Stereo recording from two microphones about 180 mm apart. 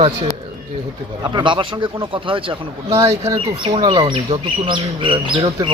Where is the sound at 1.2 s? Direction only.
25° right (ahead or behind).